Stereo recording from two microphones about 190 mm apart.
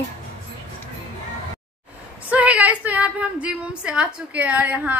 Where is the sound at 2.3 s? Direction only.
5° right (ahead or behind).